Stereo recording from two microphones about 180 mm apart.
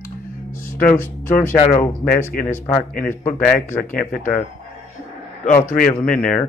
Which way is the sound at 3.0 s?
15° left (ahead or behind).